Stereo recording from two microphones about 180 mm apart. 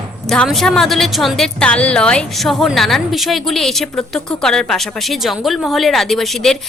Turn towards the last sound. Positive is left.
turn(degrees=0)  # may be behind; listen again after turning